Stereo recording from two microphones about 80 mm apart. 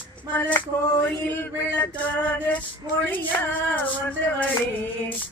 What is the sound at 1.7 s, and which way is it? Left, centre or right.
Speech, left.